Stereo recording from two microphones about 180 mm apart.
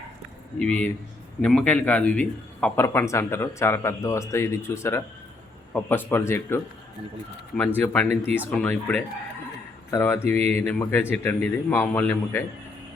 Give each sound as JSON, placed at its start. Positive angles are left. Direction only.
{"t": 0.6, "sound": "speech", "side_deg": 10}
{"t": 7.8, "sound": "speech", "side_deg": 10}
{"t": 10.3, "sound": "speech", "side_deg": -35}
{"t": 10.7, "sound": "speech", "side_deg": 10}